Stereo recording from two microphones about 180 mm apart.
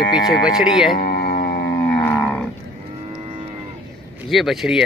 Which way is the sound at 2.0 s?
10° left (ahead or behind).